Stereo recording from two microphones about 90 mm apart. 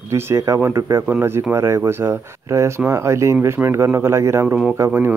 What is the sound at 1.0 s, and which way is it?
Speech, 20° right (ahead or behind).